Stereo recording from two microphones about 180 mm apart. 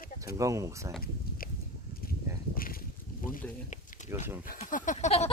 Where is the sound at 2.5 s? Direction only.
55° left (ahead or behind).